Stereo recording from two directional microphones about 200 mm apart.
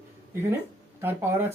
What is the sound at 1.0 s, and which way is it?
Speech, 10° right (ahead or behind).